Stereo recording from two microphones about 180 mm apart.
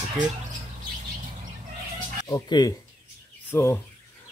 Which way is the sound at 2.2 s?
20° left (ahead or behind).